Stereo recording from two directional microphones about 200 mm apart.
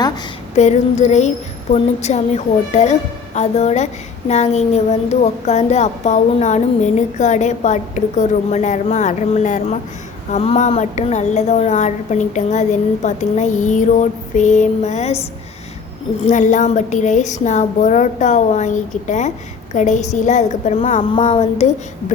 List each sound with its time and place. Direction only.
0.5 s a woman's voice: 35° left (ahead or behind)
16.2 s a woman's voice: 40° left (ahead or behind)